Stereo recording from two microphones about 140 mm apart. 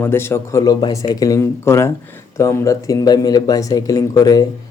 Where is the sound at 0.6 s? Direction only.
30° left (ahead or behind).